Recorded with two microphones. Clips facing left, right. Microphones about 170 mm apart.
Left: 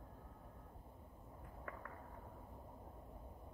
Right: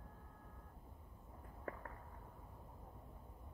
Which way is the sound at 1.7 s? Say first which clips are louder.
Right 5 dB; 30° right (ahead or behind).